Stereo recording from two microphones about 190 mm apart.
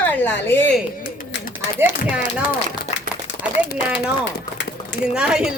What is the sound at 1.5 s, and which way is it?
Speech, 5° right (ahead or behind).